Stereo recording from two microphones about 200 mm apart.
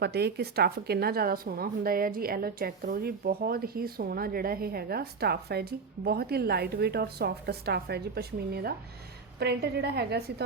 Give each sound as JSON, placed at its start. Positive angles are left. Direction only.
{"t": 0.0, "sound": "speech", "side_deg": -55}